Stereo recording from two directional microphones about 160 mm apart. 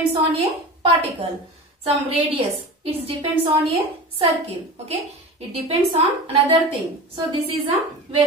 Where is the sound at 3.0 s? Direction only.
30° right (ahead or behind).